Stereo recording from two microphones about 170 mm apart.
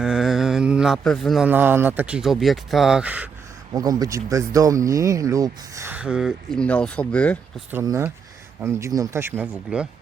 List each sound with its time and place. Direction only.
0.0 s a sound: centre (ahead or behind)
1.5 s speech: 10° right (ahead or behind)
3.7 s speech: 20° right (ahead or behind); by 7.3 s 5° left (ahead or behind)
7.7 s speech: 15° right (ahead or behind)